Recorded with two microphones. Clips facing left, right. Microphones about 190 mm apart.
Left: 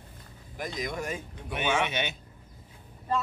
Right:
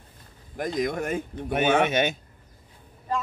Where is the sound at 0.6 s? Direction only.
50° right (ahead or behind).